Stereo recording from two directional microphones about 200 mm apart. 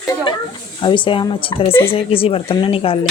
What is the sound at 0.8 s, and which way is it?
Speech, 25° left (ahead or behind).